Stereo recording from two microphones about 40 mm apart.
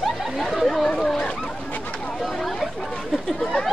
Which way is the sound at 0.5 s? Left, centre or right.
Centre.